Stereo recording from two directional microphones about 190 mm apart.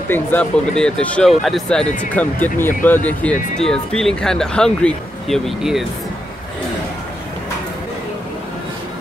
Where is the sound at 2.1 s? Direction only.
10° left (ahead or behind).